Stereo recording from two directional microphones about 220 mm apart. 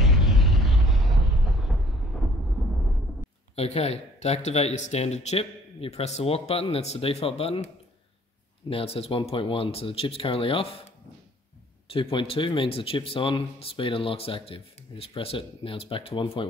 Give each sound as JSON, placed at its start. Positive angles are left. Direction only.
{"t": 0.0, "sound": "a sound", "side_deg": 0}
{"t": 3.5, "sound": "speech", "side_deg": 30}
{"t": 11.9, "sound": "speech", "side_deg": 25}